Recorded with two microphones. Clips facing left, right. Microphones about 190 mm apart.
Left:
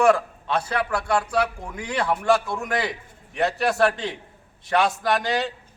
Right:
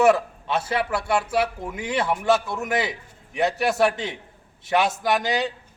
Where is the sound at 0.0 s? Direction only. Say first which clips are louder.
Right 1 dB; 20° right (ahead or behind).